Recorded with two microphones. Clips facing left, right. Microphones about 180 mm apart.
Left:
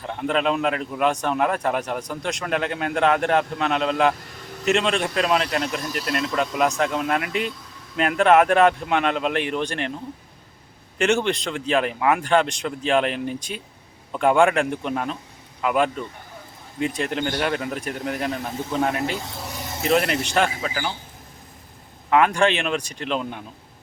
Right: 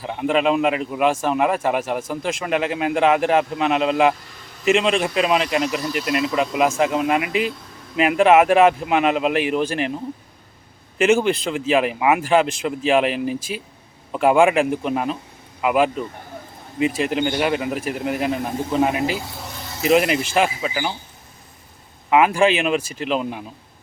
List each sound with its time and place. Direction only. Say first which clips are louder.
0.0 s a man's voice: right 3 dB; 5° right (ahead or behind)
10.9 s a man's voice: right 4 dB; 5° right (ahead or behind)
22.1 s a man's voice: right 3 dB; 5° right (ahead or behind)